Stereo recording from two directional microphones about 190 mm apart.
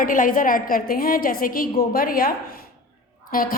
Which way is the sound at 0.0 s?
45° left (ahead or behind).